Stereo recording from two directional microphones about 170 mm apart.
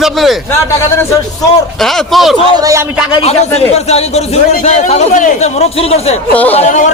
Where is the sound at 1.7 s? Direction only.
Centre (ahead or behind).